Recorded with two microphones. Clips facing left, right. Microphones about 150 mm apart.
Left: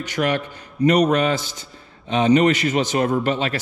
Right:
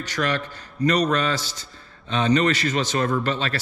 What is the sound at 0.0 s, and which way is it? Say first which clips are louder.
A man's voice: left 3 dB; 15° left (ahead or behind).